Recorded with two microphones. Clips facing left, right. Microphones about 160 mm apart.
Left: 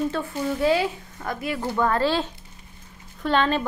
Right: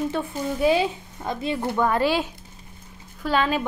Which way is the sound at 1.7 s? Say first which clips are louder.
Even; 10° right (ahead or behind).